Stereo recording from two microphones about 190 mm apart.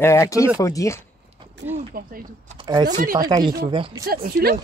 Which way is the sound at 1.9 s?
45° right (ahead or behind).